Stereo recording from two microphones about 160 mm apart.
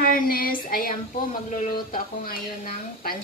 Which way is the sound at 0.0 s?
65° left (ahead or behind).